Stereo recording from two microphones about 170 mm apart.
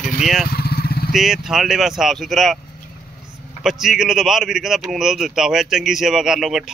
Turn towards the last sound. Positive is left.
turn(degrees=0)  # may be behind; listen again after turning